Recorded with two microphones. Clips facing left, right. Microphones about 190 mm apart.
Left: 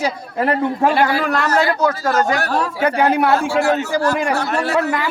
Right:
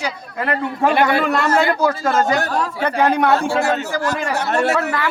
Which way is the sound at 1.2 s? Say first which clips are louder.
Right 1 dB; centre (ahead or behind).